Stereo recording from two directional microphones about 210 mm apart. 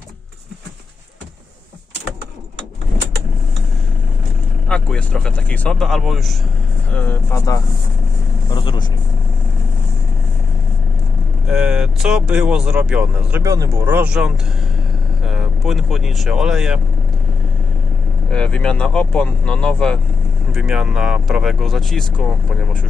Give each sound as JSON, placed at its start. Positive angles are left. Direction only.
{"t": 4.6, "sound": "speech", "side_deg": 5}
{"t": 8.5, "sound": "speech", "side_deg": 20}
{"t": 11.4, "sound": "speech", "side_deg": -5}
{"t": 18.3, "sound": "speech", "side_deg": 5}